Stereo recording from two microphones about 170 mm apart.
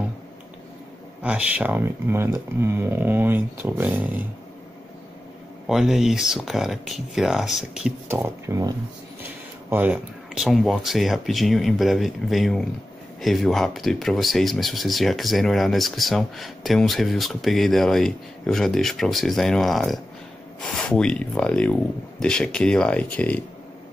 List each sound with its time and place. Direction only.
1.2 s speech: 5° right (ahead or behind)
5.7 s speech: 5° right (ahead or behind)
8.1 s speech: 15° right (ahead or behind); by 23.4 s 10° left (ahead or behind)